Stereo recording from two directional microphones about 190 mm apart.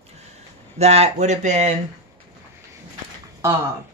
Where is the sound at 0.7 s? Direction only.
35° right (ahead or behind).